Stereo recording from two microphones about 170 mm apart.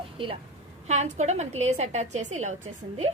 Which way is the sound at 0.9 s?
45° right (ahead or behind).